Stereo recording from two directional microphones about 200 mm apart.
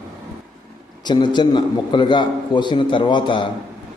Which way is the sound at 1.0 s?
20° left (ahead or behind).